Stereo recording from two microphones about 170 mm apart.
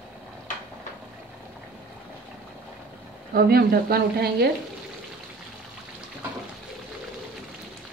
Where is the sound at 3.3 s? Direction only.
65° right (ahead or behind).